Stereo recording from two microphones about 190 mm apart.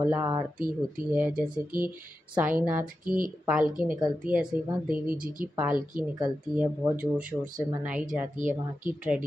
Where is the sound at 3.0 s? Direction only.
45° right (ahead or behind).